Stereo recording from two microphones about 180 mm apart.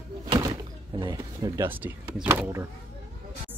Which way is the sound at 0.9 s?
25° right (ahead or behind).